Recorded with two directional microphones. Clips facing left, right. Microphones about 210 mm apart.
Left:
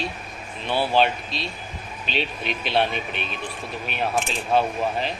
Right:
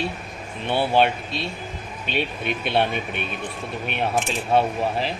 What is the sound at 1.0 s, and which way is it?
Speech, 55° right (ahead or behind).